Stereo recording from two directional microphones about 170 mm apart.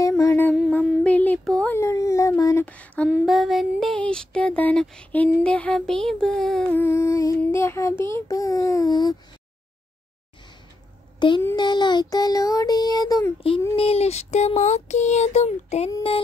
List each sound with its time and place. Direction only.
0.2 s child singing: 15° left (ahead or behind)
0.8 s a sound: 10° left (ahead or behind)
3.1 s child singing: centre (ahead or behind); by 9.1 s 25° left (ahead or behind)
11.1 s a child's voice: 30° left (ahead or behind)
11.5 s child singing: 25° left (ahead or behind)
13.7 s a sound: 35° left (ahead or behind)